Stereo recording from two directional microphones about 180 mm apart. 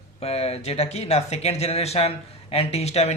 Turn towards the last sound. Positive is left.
turn(degrees=35)  # may be behind; listen again after turning